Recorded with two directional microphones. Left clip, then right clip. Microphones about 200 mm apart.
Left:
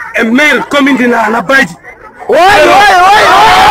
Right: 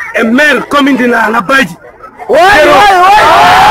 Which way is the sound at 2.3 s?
35° left (ahead or behind).